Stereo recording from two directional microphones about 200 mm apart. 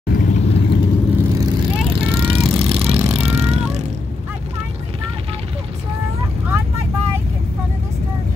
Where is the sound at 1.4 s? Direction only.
25° right (ahead or behind).